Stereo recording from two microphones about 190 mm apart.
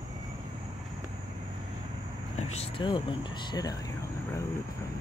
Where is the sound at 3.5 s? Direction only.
20° left (ahead or behind).